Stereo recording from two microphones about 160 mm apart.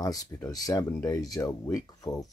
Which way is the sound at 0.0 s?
20° left (ahead or behind).